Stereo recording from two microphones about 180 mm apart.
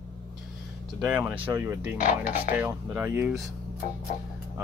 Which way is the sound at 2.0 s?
50° left (ahead or behind).